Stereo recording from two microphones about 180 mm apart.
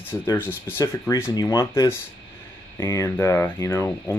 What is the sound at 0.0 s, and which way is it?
Speech, 10° left (ahead or behind).